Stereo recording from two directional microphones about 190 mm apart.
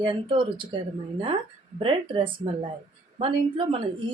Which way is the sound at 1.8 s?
25° right (ahead or behind).